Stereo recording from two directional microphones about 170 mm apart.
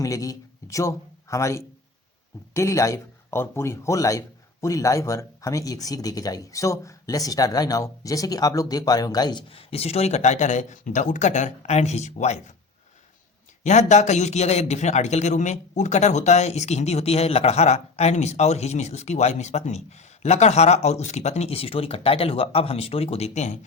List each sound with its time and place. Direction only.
0.0 s speech: 20° left (ahead or behind); by 12.4 s 45° left (ahead or behind)
13.7 s a man's voice: 45° left (ahead or behind)